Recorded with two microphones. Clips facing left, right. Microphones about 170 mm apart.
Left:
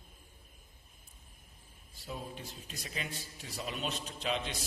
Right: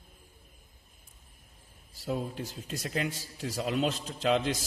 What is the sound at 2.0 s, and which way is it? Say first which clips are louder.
A man's voice: right 9 dB; 90° right.